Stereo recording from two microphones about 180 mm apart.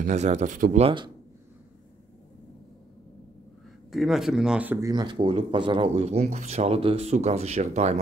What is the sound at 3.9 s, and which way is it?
Speech, centre (ahead or behind).